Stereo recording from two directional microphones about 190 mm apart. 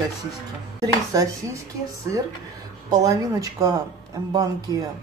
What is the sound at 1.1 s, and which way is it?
Speech, 15° right (ahead or behind).